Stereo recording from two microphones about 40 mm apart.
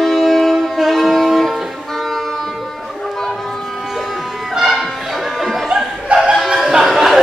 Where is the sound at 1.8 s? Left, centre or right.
Centre.